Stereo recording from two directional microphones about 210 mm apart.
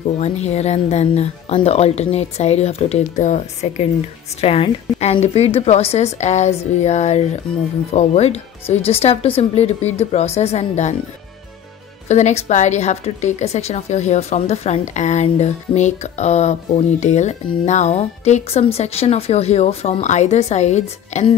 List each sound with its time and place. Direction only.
0.0 s a woman's voice: 30° left (ahead or behind)
12.1 s a woman's voice: 35° left (ahead or behind)